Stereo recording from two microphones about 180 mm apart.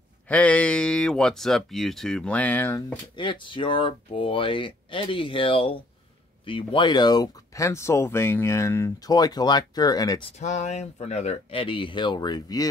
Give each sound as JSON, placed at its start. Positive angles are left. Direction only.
{"t": 0.3, "sound": "speech", "side_deg": 5}
{"t": 3.2, "sound": "speech", "side_deg": 25}
{"t": 10.4, "sound": "speech", "side_deg": 40}